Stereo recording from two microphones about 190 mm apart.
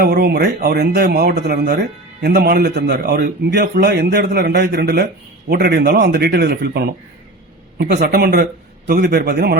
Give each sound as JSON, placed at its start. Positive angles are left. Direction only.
{"t": 0.0, "sound": "speech", "side_deg": -55}
{"t": 8.0, "sound": "speech", "side_deg": -55}